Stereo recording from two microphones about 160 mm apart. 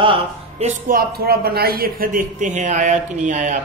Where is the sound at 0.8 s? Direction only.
70° right (ahead or behind); by 3.5 s 50° right (ahead or behind).